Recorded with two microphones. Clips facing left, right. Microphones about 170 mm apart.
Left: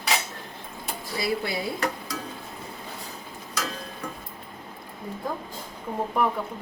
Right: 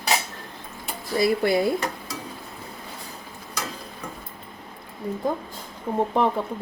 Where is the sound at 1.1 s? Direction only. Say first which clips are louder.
Right 8 dB; 50° right (ahead or behind).